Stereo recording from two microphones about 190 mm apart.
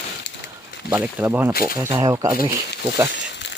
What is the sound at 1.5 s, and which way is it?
Speech, 50° left (ahead or behind).